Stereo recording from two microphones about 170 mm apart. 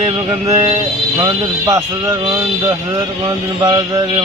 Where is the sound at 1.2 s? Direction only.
20° right (ahead or behind).